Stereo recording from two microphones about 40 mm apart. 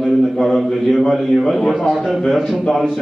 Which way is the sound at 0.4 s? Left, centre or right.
Centre.